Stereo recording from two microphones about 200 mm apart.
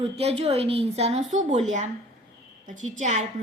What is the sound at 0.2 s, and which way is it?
A woman's voice, 30° right (ahead or behind).